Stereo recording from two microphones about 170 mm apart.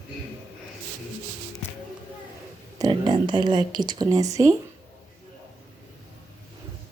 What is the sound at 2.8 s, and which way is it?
Speech, 25° right (ahead or behind).